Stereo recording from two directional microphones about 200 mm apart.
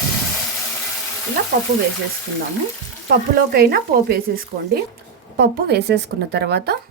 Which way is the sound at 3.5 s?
50° right (ahead or behind).